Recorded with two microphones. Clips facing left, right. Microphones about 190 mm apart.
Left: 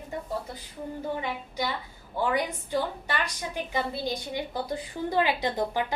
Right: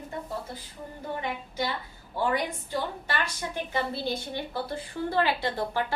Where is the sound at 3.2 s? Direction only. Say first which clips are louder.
Even; 15° left (ahead or behind).